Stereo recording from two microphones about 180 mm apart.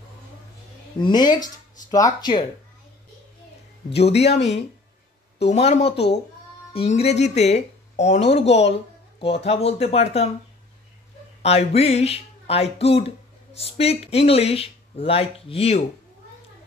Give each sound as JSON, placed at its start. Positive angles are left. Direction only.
{"t": 1.0, "sound": "speech", "side_deg": 25}
{"t": 3.9, "sound": "speech", "side_deg": 35}
{"t": 11.4, "sound": "speech", "side_deg": 35}